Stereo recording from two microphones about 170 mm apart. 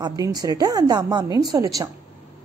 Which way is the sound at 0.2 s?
20° right (ahead or behind).